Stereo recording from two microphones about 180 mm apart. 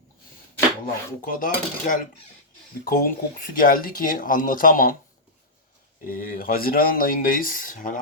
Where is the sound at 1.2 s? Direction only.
50° left (ahead or behind).